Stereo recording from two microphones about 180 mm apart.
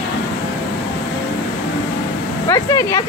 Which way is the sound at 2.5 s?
20° left (ahead or behind).